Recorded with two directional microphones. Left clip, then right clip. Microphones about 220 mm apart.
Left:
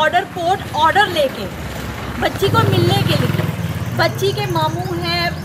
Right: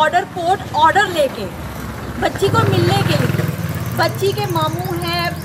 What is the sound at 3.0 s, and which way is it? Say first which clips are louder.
Vehicle: even; 30° right (ahead or behind).